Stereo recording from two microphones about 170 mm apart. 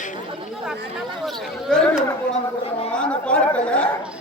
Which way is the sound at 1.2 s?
Centre (ahead or behind).